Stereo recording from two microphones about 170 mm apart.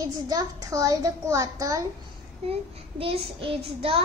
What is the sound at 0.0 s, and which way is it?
A woman's voice, 20° right (ahead or behind).